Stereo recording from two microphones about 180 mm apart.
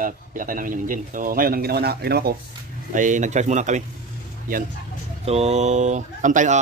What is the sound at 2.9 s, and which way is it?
Speech, 45° right (ahead or behind).